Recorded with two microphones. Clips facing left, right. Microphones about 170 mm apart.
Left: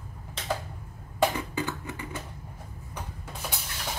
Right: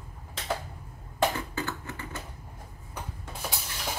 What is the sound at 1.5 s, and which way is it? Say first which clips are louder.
Typing: left 2 dB; 15° left (ahead or behind).